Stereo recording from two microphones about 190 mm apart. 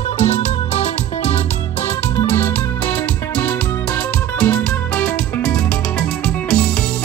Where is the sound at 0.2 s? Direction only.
35° left (ahead or behind).